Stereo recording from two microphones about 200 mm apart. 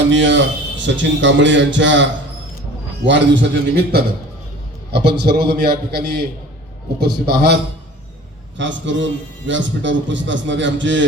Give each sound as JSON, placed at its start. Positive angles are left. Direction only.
{"t": 0.1, "sound": "a man's voice", "side_deg": -65}
{"t": 8.5, "sound": "a man's voice", "side_deg": -65}